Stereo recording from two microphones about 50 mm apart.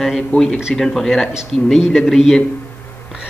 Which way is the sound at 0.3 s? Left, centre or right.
Left.